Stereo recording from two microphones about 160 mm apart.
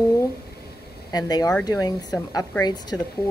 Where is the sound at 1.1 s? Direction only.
25° left (ahead or behind).